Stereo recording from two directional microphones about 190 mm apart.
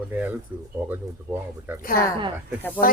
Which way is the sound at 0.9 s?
10° right (ahead or behind).